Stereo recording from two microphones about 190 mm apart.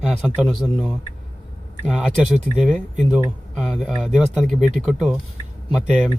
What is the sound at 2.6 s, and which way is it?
Speech, centre (ahead or behind).